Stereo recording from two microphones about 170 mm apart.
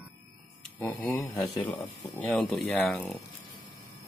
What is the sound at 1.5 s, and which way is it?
Speech, 25° left (ahead or behind).